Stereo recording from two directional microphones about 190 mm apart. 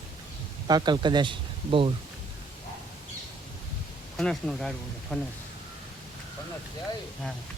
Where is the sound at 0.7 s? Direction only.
20° right (ahead or behind).